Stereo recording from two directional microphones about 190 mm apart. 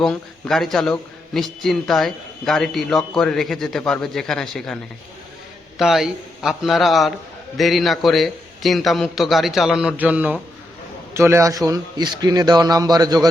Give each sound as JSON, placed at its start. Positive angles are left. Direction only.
{"t": 0.0, "sound": "a man's voice", "side_deg": 0}